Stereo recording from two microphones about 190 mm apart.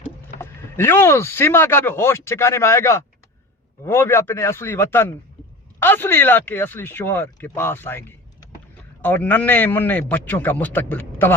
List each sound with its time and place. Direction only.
0.3 s speech: 15° left (ahead or behind)